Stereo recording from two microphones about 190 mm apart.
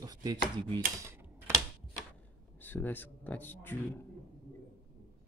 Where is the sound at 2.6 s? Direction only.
10° left (ahead or behind).